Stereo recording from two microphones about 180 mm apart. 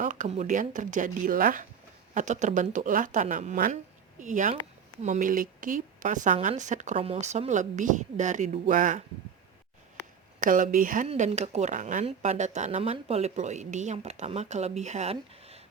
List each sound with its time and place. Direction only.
0.0 s a woman's voice: 45° right (ahead or behind)
10.4 s a woman's voice: 45° right (ahead or behind)
11.1 s speech: 35° right (ahead or behind)